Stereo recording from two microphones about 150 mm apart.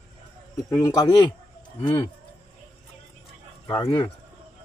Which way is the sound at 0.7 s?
25° left (ahead or behind).